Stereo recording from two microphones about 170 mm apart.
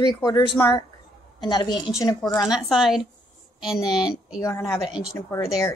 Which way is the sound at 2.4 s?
5° right (ahead or behind).